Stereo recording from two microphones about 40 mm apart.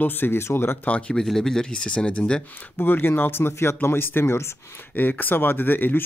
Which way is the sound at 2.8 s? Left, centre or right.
Left.